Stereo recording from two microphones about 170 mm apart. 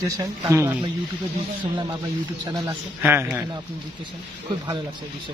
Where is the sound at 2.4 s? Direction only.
20° right (ahead or behind).